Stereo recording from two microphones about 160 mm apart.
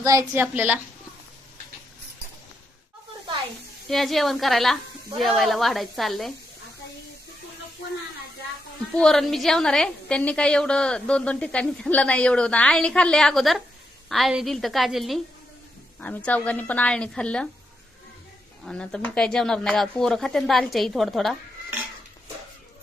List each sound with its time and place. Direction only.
0.0 s a woman's voice: 20° right (ahead or behind)
3.8 s a woman's voice: centre (ahead or behind)
8.9 s a woman's voice: 5° left (ahead or behind)
18.6 s a woman's voice: 5° left (ahead or behind)